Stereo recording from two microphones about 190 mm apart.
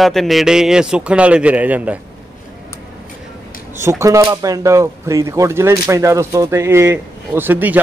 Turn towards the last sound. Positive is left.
turn(degrees=-10)  # may be behind; listen again after turning